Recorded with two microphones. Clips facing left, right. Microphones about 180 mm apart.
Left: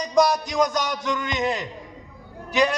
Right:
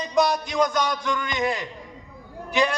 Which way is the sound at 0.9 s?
20° left (ahead or behind).